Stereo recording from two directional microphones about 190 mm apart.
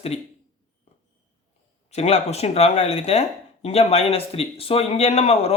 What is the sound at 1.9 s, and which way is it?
Speech, 35° left (ahead or behind).